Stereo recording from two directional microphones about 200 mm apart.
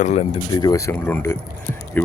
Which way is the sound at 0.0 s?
35° left (ahead or behind).